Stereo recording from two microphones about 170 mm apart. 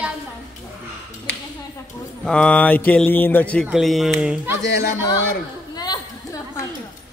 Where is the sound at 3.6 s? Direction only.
Centre (ahead or behind).